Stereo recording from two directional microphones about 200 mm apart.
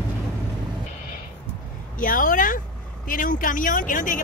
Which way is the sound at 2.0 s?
45° left (ahead or behind).